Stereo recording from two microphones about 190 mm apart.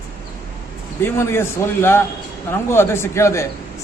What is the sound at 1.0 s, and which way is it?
A man's voice, 15° left (ahead or behind).